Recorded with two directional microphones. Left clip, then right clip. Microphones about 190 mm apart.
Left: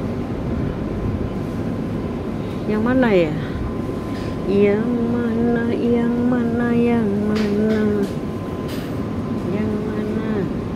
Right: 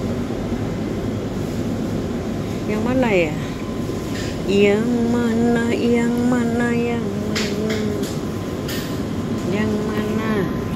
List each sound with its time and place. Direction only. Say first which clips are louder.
2.7 s speech: left 2 dB; 25° left (ahead or behind)
4.5 s music: right 1 dB; 10° left (ahead or behind)